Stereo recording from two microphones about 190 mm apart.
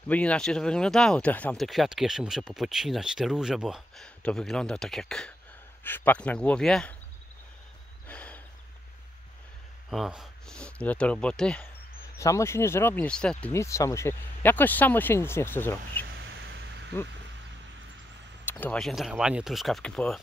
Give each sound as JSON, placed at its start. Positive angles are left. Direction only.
{"t": 0.1, "sound": "speech", "side_deg": 5}
{"t": 8.1, "sound": "a sound", "side_deg": 5}
{"t": 9.8, "sound": "speech", "side_deg": 0}
{"t": 12.2, "sound": "speech", "side_deg": 15}
{"t": 16.1, "sound": "a sound", "side_deg": -85}
{"t": 18.4, "sound": "speech", "side_deg": 10}